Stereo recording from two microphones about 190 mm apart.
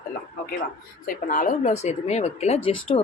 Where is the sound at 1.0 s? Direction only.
45° left (ahead or behind).